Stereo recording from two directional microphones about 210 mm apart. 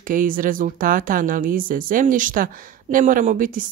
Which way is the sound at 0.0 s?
40° right (ahead or behind).